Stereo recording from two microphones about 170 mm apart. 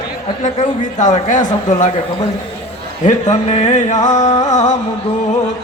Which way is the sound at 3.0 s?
40° left (ahead or behind).